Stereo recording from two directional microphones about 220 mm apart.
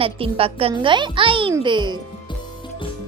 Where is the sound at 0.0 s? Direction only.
25° right (ahead or behind).